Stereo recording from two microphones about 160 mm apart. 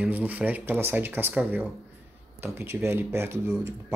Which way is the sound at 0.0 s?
10° right (ahead or behind).